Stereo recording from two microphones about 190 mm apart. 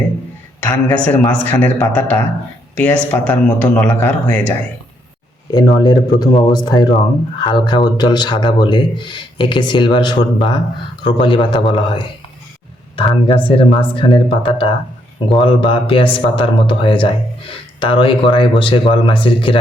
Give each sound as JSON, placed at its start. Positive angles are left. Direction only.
{"t": 0.6, "sound": "a man's voice", "side_deg": 5}
{"t": 5.5, "sound": "speech", "side_deg": 20}